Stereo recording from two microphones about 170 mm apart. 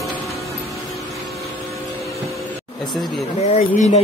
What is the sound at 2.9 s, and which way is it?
Speech, centre (ahead or behind).